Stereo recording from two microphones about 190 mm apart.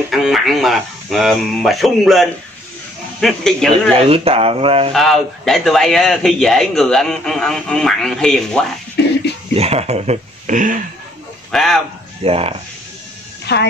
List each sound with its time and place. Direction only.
0.1 s a man's voice: centre (ahead or behind)
3.9 s speech: 30° right (ahead or behind)
4.9 s a man's voice: centre (ahead or behind)
9.6 s speech: 35° right (ahead or behind)
11.5 s a man's voice: centre (ahead or behind)
12.2 s speech: 30° right (ahead or behind)
13.5 s a woman's voice: 60° left (ahead or behind)